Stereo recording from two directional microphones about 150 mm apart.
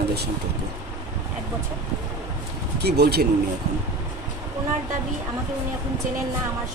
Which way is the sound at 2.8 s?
90° right.